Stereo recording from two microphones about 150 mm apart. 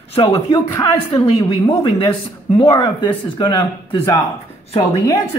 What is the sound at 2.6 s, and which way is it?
Speech, 30° left (ahead or behind).